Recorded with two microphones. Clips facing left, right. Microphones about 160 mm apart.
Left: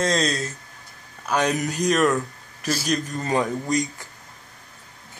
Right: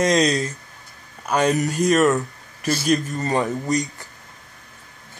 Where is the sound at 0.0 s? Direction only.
15° right (ahead or behind).